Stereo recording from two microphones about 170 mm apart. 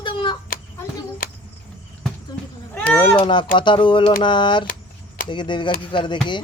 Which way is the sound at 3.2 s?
30° left (ahead or behind).